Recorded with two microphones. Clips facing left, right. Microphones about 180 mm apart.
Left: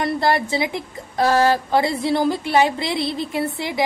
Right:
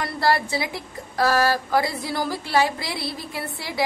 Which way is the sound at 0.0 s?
20° left (ahead or behind).